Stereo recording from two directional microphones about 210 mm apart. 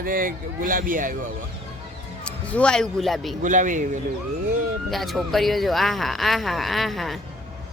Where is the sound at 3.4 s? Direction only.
35° right (ahead or behind).